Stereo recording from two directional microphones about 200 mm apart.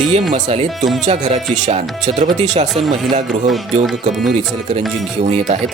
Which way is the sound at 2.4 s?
35° right (ahead or behind).